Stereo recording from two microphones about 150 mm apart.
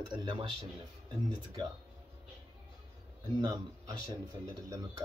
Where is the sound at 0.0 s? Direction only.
30° right (ahead or behind).